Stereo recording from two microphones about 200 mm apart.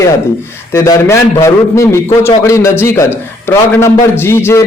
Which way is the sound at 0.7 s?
10° left (ahead or behind).